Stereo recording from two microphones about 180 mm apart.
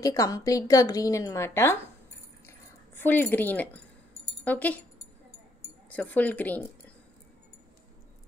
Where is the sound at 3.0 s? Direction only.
10° left (ahead or behind).